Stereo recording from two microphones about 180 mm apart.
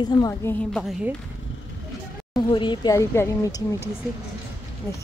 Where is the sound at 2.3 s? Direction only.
25° left (ahead or behind).